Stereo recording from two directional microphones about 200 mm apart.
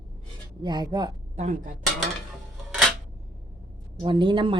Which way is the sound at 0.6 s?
20° right (ahead or behind).